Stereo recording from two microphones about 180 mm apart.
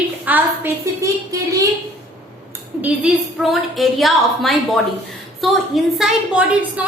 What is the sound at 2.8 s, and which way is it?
A woman's voice, 5° right (ahead or behind).